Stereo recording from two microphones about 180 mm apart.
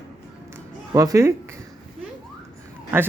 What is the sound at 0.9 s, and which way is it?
Speech, 15° right (ahead or behind).